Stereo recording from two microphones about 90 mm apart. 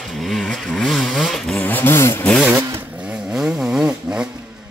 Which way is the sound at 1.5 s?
20° left (ahead or behind).